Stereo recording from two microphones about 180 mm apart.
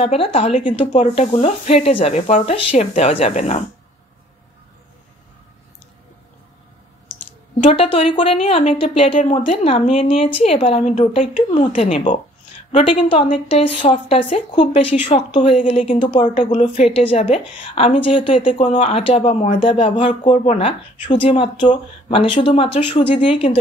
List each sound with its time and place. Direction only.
0.0 s speech: 30° left (ahead or behind)
7.6 s speech: 30° left (ahead or behind)